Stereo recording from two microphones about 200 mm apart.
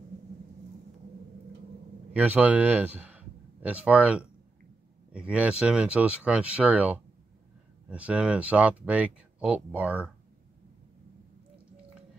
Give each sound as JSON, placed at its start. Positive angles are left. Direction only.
{"t": 2.1, "sound": "speech", "side_deg": -10}